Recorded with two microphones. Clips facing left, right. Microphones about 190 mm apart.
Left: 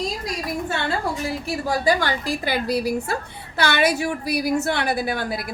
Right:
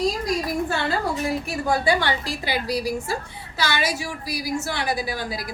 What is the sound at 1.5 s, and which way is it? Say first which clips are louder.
A woman's voice: left 3 dB; 40° left (ahead or behind).